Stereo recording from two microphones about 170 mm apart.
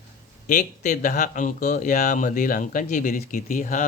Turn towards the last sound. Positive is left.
turn(degrees=45)  # may be behind; listen again after turning